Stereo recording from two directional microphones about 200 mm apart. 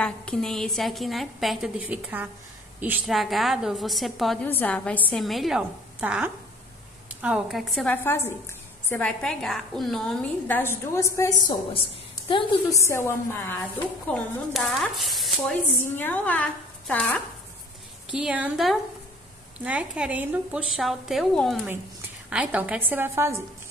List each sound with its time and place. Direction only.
0.0 s a woman's voice: 5° left (ahead or behind)
14.1 s a woman's voice: centre (ahead or behind)
18.1 s a woman's voice: 5° right (ahead or behind)